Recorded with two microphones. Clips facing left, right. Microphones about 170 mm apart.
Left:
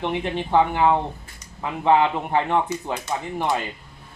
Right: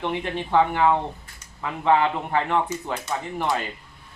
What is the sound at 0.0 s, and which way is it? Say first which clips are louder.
Speech: left 2 dB; 20° left (ahead or behind).